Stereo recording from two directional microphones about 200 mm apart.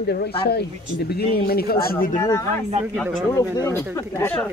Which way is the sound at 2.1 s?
15° left (ahead or behind).